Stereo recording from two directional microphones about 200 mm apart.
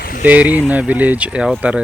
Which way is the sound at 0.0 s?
45° left (ahead or behind).